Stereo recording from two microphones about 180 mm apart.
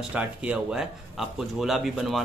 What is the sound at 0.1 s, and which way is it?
Speech, 5° right (ahead or behind).